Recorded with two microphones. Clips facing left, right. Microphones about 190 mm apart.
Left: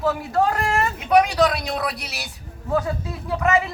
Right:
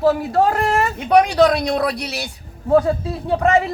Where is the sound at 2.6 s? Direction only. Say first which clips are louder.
Right 8 dB; 30° right (ahead or behind).